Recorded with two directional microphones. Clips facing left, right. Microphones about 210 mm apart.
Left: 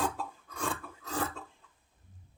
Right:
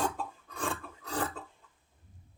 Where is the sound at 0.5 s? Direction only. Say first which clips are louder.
Even; centre (ahead or behind).